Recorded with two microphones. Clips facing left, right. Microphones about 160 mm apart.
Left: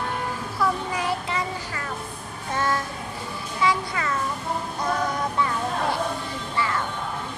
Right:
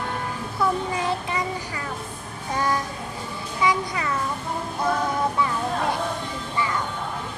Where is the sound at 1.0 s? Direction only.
20° right (ahead or behind).